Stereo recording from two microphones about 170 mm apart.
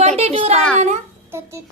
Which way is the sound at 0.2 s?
40° right (ahead or behind).